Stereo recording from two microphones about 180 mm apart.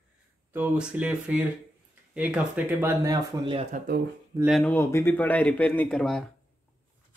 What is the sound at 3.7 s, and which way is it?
Speech, 55° right (ahead or behind).